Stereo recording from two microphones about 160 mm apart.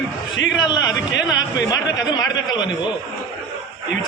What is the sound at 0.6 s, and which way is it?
Speech, 25° left (ahead or behind).